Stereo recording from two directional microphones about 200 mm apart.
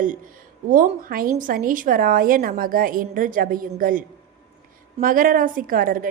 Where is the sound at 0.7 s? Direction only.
45° right (ahead or behind).